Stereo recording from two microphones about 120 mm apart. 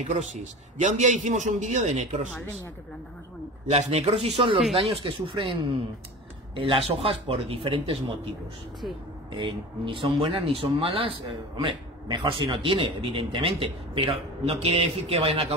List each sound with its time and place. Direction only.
0.0 s a man's voice: 75° right (ahead or behind)
3.6 s speech: 60° right (ahead or behind)
9.4 s speech: 45° right (ahead or behind)